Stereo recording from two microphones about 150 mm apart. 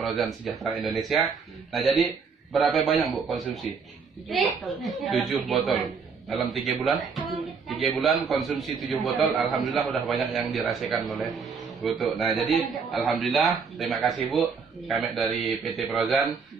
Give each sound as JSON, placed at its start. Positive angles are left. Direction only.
{"t": 0.0, "sound": "a man's voice", "side_deg": 0}